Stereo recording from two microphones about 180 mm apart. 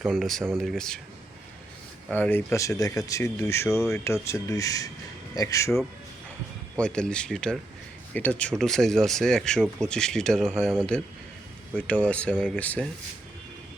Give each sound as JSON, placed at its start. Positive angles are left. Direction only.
{"t": 0.1, "sound": "speech", "side_deg": 0}
{"t": 2.0, "sound": "speech", "side_deg": 5}
{"t": 6.7, "sound": "speech", "side_deg": 5}